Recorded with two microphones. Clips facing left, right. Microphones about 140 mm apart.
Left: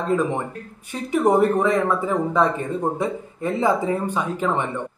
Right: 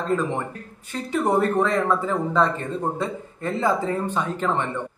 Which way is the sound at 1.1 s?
15° left (ahead or behind).